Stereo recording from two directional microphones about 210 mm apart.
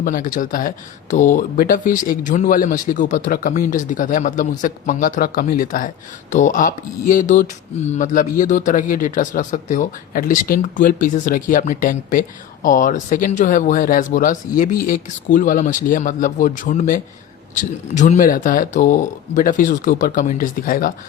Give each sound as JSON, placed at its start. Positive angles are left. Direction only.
{"t": 0.0, "sound": "mantra", "side_deg": 40}